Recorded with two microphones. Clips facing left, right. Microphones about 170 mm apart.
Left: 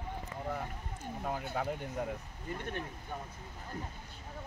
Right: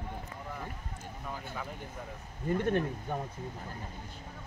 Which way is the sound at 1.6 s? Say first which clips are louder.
Left 8 dB; 65° left (ahead or behind).